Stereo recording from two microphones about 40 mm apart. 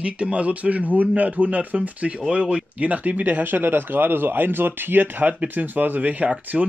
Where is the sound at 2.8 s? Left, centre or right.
Right.